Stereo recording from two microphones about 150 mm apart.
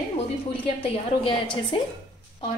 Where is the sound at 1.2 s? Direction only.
30° left (ahead or behind).